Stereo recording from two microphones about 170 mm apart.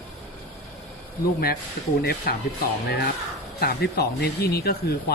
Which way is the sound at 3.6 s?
70° left (ahead or behind).